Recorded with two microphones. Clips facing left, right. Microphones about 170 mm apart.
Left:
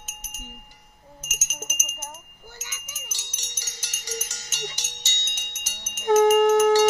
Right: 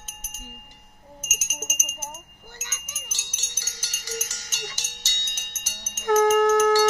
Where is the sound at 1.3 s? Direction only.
5° right (ahead or behind).